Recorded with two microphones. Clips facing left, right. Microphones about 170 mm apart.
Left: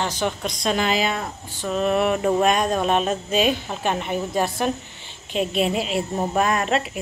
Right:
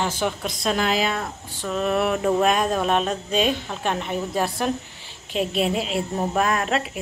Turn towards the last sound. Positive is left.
turn(degrees=0)  # may be behind; listen again after turning